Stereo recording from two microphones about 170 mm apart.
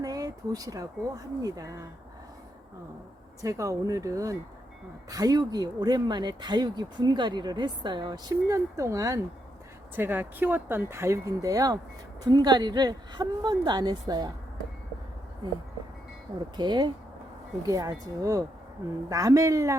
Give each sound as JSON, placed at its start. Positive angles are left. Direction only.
{"t": 0.0, "sound": "speech", "side_deg": -20}
{"t": 3.4, "sound": "speech", "side_deg": -20}
{"t": 15.4, "sound": "speech", "side_deg": -25}